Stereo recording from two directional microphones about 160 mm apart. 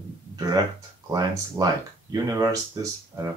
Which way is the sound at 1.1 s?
25° right (ahead or behind).